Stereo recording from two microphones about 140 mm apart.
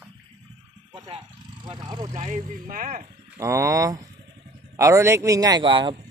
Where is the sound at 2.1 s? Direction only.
65° right (ahead or behind); by 3.1 s 80° right.